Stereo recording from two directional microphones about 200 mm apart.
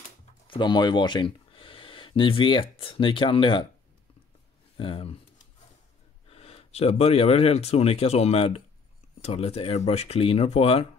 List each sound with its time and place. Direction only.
0.5 s speech: 20° left (ahead or behind)
4.7 s speech: 25° left (ahead or behind)
6.3 s speech: 30° left (ahead or behind)